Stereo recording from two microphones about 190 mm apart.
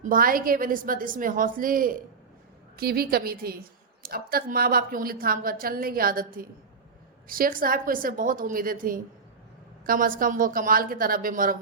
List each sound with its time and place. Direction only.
0.0 s a woman's voice: 45° right (ahead or behind)